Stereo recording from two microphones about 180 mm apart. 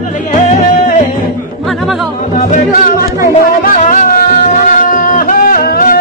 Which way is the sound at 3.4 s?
50° left (ahead or behind).